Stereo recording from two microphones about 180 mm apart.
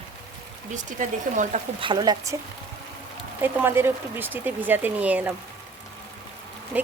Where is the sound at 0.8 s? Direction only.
45° right (ahead or behind).